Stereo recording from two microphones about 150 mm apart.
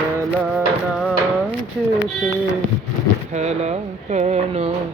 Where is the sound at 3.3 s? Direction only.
45° right (ahead or behind).